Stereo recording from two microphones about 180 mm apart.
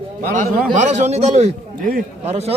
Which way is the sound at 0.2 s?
45° right (ahead or behind).